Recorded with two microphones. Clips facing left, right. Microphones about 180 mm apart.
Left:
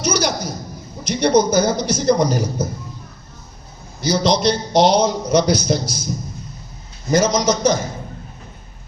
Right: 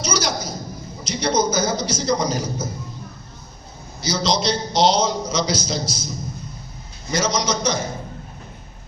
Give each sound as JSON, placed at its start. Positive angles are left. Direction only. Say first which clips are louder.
{"t": 0.0, "sound": "a sound", "louder": "left 4 dB", "side_deg": 60}
{"t": 1.0, "sound": "a man's voice", "louder": "left 5 dB", "side_deg": 60}
{"t": 4.0, "sound": "a man's voice", "louder": "left 5 dB", "side_deg": 60}
{"t": 7.2, "sound": "a man's voice", "louder": "left 5 dB", "side_deg": 50}